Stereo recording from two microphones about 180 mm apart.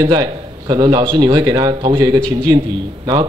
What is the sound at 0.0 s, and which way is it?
A man's voice, 20° right (ahead or behind).